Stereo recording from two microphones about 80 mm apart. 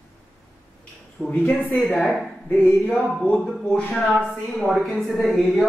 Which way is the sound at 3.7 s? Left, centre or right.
Centre.